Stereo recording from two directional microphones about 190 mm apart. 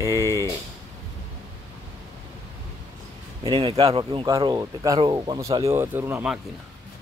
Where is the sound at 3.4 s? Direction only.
30° right (ahead or behind); by 6.4 s 10° right (ahead or behind).